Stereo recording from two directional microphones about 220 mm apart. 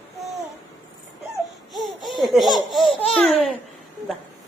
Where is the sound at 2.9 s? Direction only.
25° left (ahead or behind).